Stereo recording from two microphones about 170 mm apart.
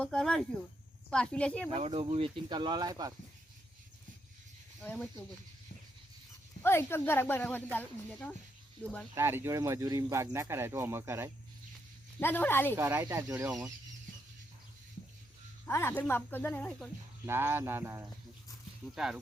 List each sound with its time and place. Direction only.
0.0 s speech: 5° left (ahead or behind)
1.7 s speech: 35° right (ahead or behind)
4.8 s speech: 10° left (ahead or behind)
6.6 s speech: 15° left (ahead or behind)
9.1 s speech: 15° right (ahead or behind)
12.2 s speech: 10° left (ahead or behind)
12.7 s speech: 15° right (ahead or behind)
15.6 s speech: 15° left (ahead or behind)
17.2 s speech: 15° right (ahead or behind)